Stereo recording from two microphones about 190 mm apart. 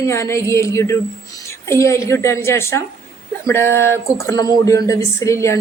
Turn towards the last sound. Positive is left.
turn(degrees=15)  # may be behind; listen again after turning